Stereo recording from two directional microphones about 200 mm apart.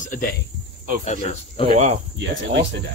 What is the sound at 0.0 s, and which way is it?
Speech, 40° left (ahead or behind).